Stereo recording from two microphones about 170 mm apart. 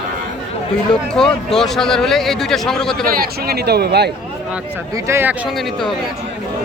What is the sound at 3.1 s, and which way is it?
Speech, 65° right (ahead or behind).